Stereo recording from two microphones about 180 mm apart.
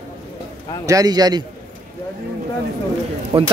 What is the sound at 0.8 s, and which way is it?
Speech, 20° right (ahead or behind).